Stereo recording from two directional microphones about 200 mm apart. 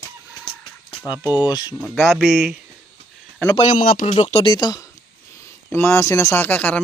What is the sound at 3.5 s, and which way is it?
Speech, 35° left (ahead or behind).